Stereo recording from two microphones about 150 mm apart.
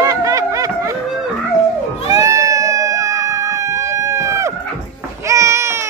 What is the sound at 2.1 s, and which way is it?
Cat, 25° right (ahead or behind).